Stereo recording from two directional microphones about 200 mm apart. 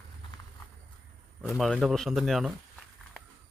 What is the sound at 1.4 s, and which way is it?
Speech, centre (ahead or behind).